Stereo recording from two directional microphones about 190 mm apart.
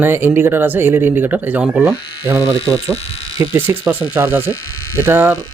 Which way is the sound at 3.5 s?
10° right (ahead or behind).